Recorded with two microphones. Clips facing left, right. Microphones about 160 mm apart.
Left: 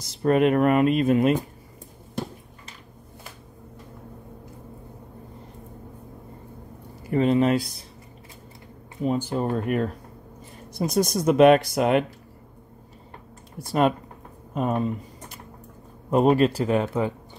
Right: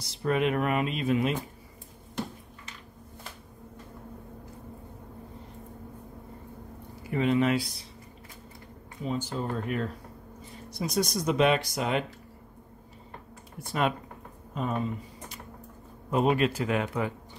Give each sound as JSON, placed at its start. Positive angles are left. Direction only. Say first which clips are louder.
{"t": 0.0, "sound": "speech", "louder": "left 7 dB", "side_deg": 45}
{"t": 7.1, "sound": "speech", "louder": "left 5 dB", "side_deg": 40}
{"t": 9.0, "sound": "speech", "louder": "left 7 dB", "side_deg": 55}
{"t": 13.6, "sound": "speech", "louder": "left 7 dB", "side_deg": 40}
{"t": 16.1, "sound": "speech", "louder": "left 6 dB", "side_deg": 40}